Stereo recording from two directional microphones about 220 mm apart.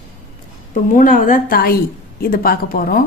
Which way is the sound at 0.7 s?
35° left (ahead or behind).